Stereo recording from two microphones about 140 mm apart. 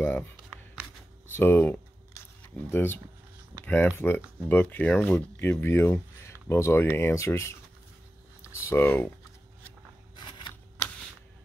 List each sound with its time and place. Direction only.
0.0 s shuffling cards: 10° left (ahead or behind)
1.3 s camera: 15° left (ahead or behind)
3.6 s speech: 15° left (ahead or behind)
8.5 s speech: 20° left (ahead or behind)
10.1 s scissors: 35° left (ahead or behind)